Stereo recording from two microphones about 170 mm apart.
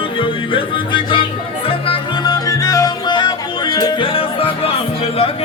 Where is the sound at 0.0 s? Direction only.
30° left (ahead or behind).